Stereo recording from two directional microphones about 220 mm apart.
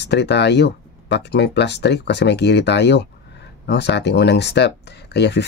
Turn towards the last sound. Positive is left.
turn(degrees=50)  # may be behind; listen again after turning